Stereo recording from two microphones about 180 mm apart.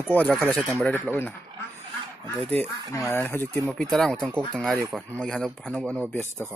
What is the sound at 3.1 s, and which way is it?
Speech, 10° left (ahead or behind).